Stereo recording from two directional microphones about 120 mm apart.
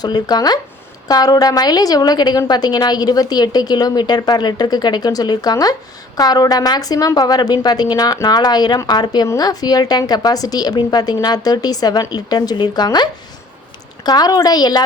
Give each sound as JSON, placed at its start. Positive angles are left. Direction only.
{"t": 0.0, "sound": "a woman's voice", "side_deg": 35}